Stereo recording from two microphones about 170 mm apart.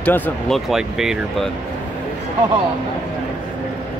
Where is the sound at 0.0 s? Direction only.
10° left (ahead or behind).